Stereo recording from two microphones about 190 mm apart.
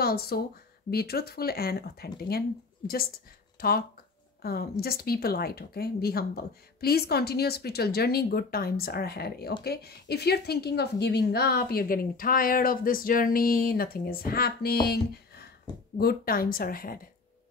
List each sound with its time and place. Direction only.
0.0 s a woman's voice: 55° left (ahead or behind)
3.5 s a woman's voice: 50° left (ahead or behind)